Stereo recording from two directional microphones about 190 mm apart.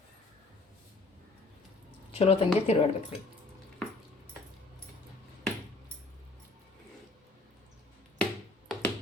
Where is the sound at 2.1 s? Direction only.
30° left (ahead or behind).